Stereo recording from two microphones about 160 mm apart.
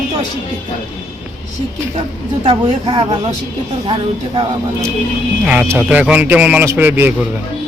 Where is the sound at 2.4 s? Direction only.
35° right (ahead or behind).